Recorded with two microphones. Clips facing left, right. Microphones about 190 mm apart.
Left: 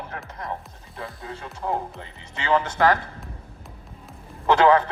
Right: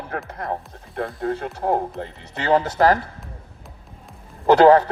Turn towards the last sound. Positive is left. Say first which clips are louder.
# right 5 dB
turn(degrees=-40)  # may be behind; listen again after turning